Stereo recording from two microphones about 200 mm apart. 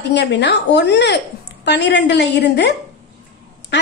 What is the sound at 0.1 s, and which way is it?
A woman's voice, 60° left (ahead or behind).